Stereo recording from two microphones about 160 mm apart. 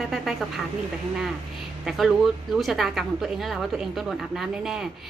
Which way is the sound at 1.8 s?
Centre (ahead or behind).